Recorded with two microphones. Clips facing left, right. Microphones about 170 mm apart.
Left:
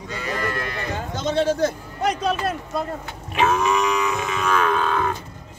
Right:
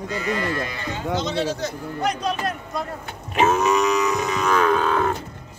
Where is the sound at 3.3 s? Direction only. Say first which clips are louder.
Right 1 dB; 40° right (ahead or behind).